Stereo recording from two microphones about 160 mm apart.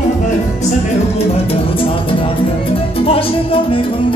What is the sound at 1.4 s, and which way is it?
Music, 35° left (ahead or behind).